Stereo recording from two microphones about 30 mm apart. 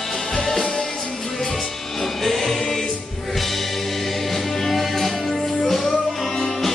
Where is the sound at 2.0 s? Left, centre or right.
Centre.